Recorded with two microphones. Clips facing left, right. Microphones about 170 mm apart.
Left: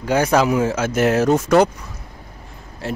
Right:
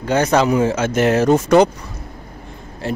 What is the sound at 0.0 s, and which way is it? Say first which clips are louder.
Speech: right 1 dB; 10° left (ahead or behind).